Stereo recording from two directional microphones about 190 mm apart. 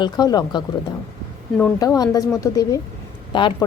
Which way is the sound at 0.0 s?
20° left (ahead or behind).